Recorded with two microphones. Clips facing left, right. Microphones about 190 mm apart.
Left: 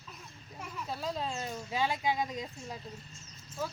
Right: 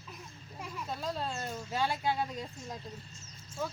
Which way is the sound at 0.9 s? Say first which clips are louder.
Left 1 dB; 10° left (ahead or behind).